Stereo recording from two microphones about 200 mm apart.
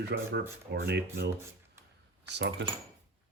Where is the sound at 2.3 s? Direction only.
60° right (ahead or behind).